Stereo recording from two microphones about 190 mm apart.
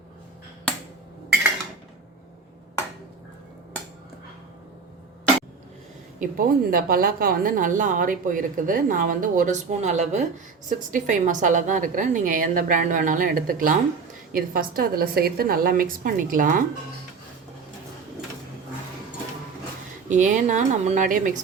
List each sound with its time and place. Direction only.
6.1 s a woman's voice: 45° right (ahead or behind)
20.1 s speech: 40° right (ahead or behind)